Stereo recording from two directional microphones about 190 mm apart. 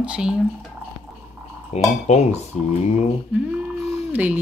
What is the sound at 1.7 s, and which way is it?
Speech, 35° left (ahead or behind).